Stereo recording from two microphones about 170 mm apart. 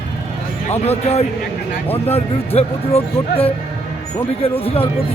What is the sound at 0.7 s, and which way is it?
Speech, 40° left (ahead or behind).